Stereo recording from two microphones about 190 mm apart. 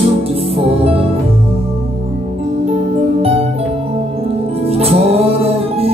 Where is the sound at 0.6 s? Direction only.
30° right (ahead or behind).